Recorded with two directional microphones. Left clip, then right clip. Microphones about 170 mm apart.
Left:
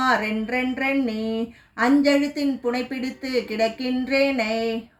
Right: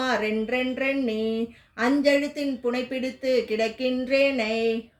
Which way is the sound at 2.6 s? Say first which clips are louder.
Left 1 dB; 40° right (ahead or behind).